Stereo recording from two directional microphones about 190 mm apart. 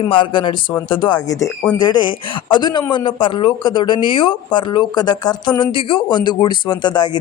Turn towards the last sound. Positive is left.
turn(degrees=20)  # may be behind; listen again after turning